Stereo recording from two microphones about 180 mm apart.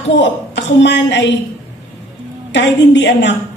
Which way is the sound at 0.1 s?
80° left.